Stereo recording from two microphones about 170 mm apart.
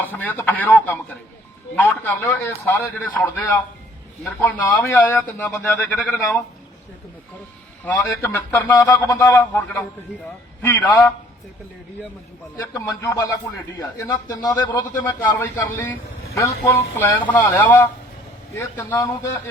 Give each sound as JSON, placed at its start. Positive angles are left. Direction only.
{"t": 0.0, "sound": "a man's voice", "side_deg": 10}
{"t": 7.9, "sound": "a man's voice", "side_deg": 10}
{"t": 12.5, "sound": "a man's voice", "side_deg": 20}